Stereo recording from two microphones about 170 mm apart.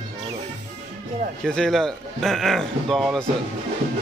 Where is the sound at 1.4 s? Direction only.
5° left (ahead or behind).